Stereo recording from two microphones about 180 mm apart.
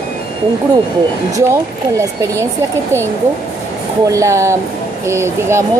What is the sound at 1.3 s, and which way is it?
Speech, 15° right (ahead or behind).